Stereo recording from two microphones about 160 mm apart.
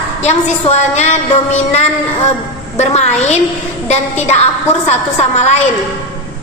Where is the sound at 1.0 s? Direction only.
45° left (ahead or behind).